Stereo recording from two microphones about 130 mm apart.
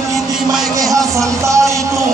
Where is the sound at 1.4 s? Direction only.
25° right (ahead or behind).